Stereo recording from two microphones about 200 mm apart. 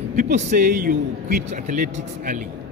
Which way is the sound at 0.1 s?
40° right (ahead or behind).